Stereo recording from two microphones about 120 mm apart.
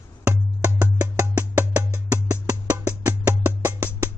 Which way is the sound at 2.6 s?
10° right (ahead or behind).